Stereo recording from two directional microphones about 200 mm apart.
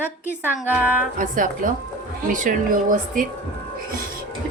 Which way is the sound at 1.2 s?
40° right (ahead or behind).